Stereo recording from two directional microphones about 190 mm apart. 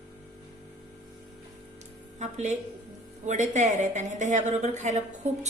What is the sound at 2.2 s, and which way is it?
A woman's voice, 35° right (ahead or behind).